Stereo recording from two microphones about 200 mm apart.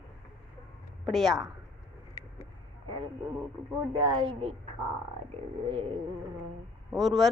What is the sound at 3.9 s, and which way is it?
Speech, 20° right (ahead or behind).